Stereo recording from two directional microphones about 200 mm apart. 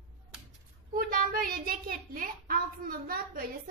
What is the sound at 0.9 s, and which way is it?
A child's voice, 45° right (ahead or behind).